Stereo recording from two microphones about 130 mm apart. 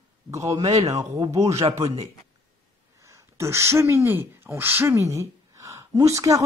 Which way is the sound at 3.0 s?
25° right (ahead or behind).